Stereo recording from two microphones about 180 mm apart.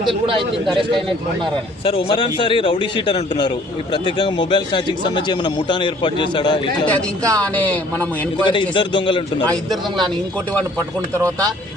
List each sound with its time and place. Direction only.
0.0 s speech: 30° right (ahead or behind)
1.8 s a man's voice: 30° left (ahead or behind)
6.8 s speech: 10° left (ahead or behind)
8.4 s a man's voice: 25° left (ahead or behind)
11.2 s speech: 20° right (ahead or behind)